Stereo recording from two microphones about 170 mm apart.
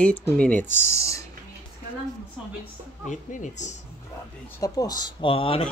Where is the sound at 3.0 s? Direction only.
45° left (ahead or behind).